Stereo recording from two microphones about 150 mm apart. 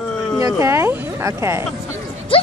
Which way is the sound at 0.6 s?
15° right (ahead or behind).